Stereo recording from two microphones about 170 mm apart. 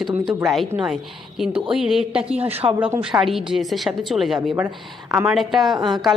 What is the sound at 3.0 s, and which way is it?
A woman's voice, centre (ahead or behind).